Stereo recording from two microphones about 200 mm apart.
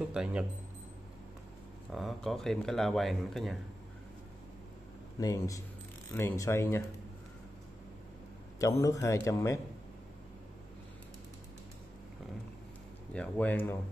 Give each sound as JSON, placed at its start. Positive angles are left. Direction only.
{"t": 0.1, "sound": "speech", "side_deg": -5}
{"t": 1.9, "sound": "speech", "side_deg": 0}
{"t": 5.2, "sound": "a man's voice", "side_deg": 15}
{"t": 8.5, "sound": "a man's voice", "side_deg": 15}
{"t": 13.1, "sound": "a man's voice", "side_deg": 5}